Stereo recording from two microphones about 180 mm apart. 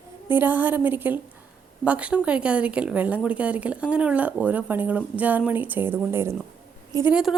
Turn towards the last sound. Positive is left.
turn(degrees=-5)  # may be behind; listen again after turning